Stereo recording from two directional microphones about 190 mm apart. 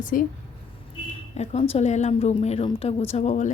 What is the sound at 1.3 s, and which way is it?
A woman's voice, 35° left (ahead or behind).